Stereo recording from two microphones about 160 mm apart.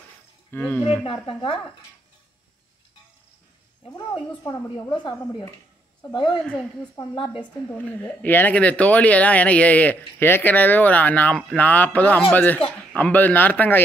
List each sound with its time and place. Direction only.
0.5 s speech: 10° left (ahead or behind)
1.2 s speech: 35° left (ahead or behind)
3.9 s a woman's voice: 25° left (ahead or behind)
6.1 s a woman's voice: 30° left (ahead or behind)
7.7 s speech: 10° left (ahead or behind)